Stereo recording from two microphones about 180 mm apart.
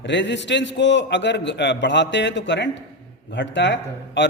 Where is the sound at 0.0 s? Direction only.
80° left.